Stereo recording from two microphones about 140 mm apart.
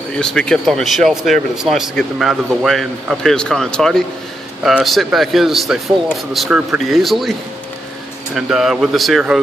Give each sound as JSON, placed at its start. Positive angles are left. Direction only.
{"t": 0.2, "sound": "speech", "side_deg": 5}
{"t": 8.4, "sound": "speech", "side_deg": -5}